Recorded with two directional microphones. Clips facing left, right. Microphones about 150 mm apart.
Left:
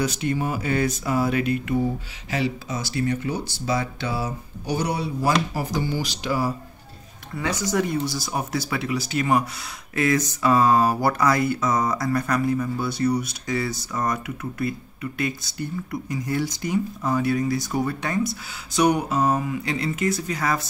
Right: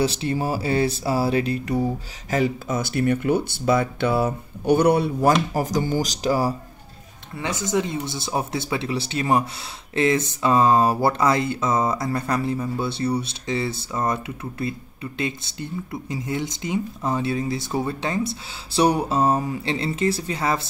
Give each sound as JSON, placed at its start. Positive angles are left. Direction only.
{"t": 0.0, "sound": "speech", "side_deg": -30}
{"t": 2.3, "sound": "speech", "side_deg": -50}
{"t": 7.4, "sound": "speech", "side_deg": -25}